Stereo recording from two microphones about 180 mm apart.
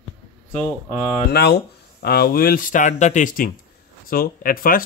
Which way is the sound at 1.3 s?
65° left (ahead or behind).